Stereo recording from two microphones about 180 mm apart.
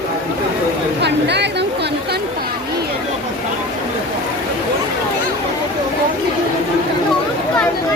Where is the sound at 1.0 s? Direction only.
70° right (ahead or behind).